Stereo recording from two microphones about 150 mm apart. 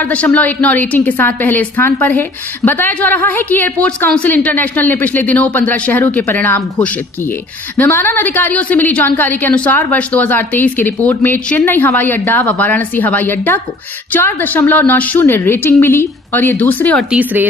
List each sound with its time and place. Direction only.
0.0 s a woman's voice: 10° left (ahead or behind)
17.1 s speech: 10° right (ahead or behind)